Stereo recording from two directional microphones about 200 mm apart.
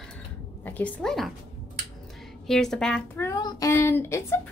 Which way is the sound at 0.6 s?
10° left (ahead or behind).